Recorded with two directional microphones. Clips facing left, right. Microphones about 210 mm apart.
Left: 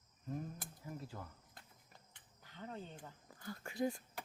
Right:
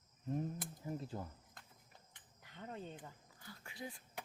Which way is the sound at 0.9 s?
25° right (ahead or behind).